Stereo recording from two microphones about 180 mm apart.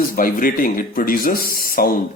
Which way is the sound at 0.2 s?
50° left (ahead or behind).